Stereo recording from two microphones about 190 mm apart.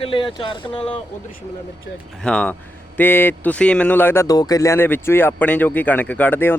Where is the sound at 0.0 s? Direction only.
25° left (ahead or behind).